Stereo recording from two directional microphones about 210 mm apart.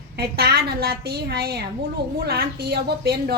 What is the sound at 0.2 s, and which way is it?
A woman's voice, 50° right (ahead or behind).